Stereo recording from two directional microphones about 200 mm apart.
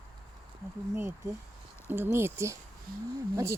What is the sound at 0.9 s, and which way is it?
Speech, 10° right (ahead or behind).